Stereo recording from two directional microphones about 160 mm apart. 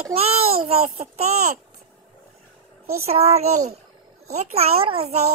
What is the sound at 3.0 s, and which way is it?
A child's voice, 40° right (ahead or behind).